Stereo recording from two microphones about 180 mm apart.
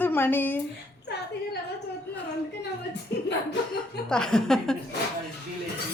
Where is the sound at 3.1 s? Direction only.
65° left (ahead or behind).